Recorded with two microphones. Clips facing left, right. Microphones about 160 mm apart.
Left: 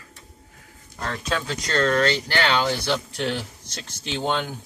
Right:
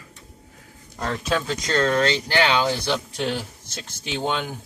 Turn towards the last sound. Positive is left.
turn(degrees=-10)  # may be behind; listen again after turning